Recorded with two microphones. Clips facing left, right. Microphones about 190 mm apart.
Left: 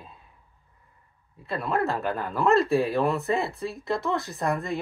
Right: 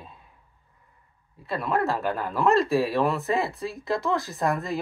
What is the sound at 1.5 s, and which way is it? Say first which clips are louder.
Speech: right 1 dB; centre (ahead or behind).